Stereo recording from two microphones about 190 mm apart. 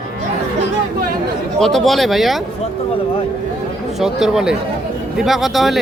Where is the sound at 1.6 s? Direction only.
Centre (ahead or behind).